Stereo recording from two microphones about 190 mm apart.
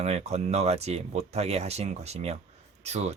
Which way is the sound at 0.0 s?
35° right (ahead or behind).